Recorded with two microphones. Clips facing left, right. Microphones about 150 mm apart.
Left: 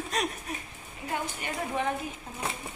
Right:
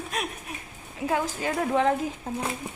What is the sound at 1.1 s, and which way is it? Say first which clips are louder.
Speech: right 6 dB; 90° right.